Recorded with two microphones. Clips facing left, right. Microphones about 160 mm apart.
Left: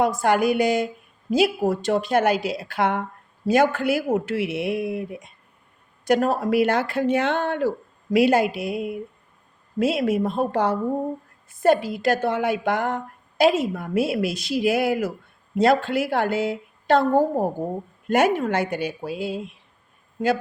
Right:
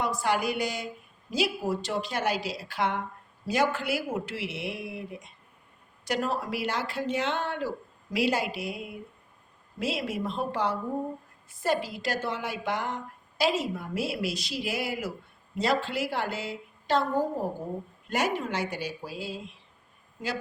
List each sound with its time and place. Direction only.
0.0 s a woman's voice: 50° left (ahead or behind)